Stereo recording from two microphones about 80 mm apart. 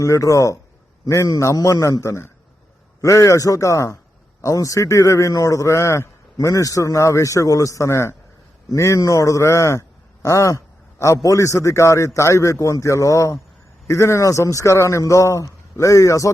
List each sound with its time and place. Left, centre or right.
0.0 s a man's voice: left